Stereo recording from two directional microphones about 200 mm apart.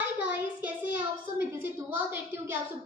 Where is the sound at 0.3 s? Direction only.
10° right (ahead or behind).